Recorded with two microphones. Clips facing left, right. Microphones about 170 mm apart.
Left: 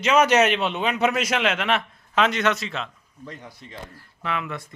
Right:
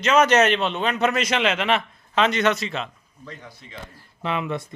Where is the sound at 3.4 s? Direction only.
10° left (ahead or behind).